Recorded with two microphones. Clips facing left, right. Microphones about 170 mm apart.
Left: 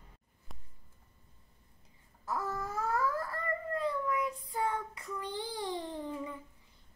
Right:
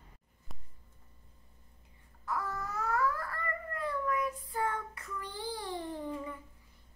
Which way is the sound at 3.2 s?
20° left (ahead or behind).